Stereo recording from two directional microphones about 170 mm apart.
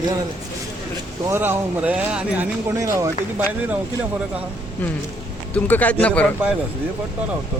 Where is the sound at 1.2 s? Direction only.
15° right (ahead or behind).